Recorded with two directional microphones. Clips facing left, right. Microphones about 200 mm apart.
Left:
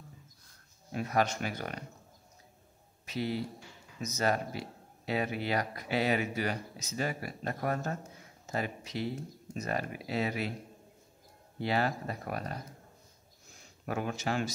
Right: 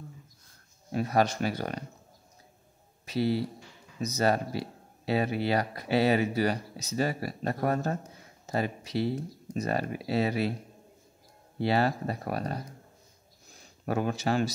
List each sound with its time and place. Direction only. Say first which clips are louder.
0.9 s speech: right 4 dB; 35° right (ahead or behind)
3.1 s speech: right 6 dB; 35° right (ahead or behind)
11.6 s speech: right 5 dB; 35° right (ahead or behind)
13.8 s speech: right 5 dB; 35° right (ahead or behind)